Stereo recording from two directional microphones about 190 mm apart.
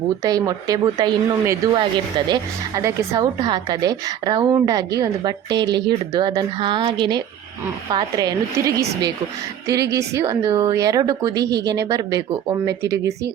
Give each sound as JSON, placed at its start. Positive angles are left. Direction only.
{"t": 0.2, "sound": "speech", "side_deg": -20}